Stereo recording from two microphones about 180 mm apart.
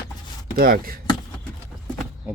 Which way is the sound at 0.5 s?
55° right (ahead or behind).